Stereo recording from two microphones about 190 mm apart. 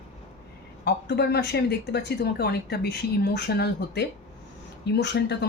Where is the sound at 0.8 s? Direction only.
60° left (ahead or behind).